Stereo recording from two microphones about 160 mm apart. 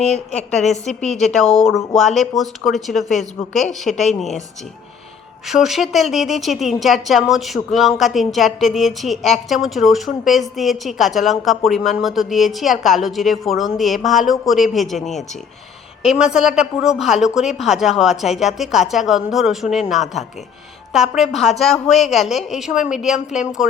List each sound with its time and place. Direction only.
0.0 s a woman's voice: 45° left (ahead or behind)
0.9 s a woman's voice: centre (ahead or behind)
5.5 s a woman's voice: centre (ahead or behind)